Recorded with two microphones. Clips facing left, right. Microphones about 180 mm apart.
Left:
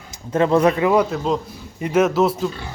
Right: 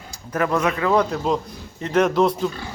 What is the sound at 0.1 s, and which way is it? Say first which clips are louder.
Speech: left 5 dB; 25° left (ahead or behind).